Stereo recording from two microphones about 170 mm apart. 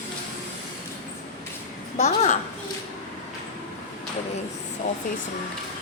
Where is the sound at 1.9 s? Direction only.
40° left (ahead or behind).